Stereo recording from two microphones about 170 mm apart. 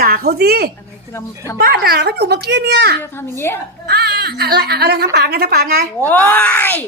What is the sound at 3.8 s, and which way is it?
Speech, 70° right (ahead or behind).